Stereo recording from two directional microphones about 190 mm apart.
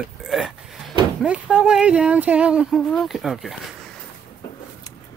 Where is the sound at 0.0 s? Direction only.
Centre (ahead or behind).